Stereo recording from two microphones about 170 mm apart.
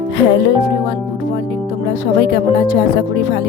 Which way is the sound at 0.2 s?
90° left.